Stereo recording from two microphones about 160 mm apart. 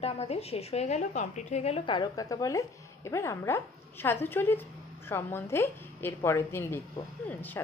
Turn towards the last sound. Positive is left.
turn(degrees=10)  # may be behind; listen again after turning